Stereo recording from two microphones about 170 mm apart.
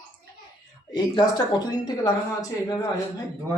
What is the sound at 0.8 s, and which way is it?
Speech, 25° left (ahead or behind).